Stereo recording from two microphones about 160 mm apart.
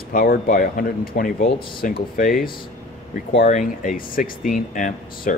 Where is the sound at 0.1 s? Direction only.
60° left (ahead or behind).